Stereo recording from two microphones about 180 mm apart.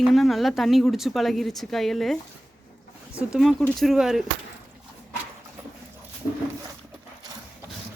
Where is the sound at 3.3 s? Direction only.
Centre (ahead or behind).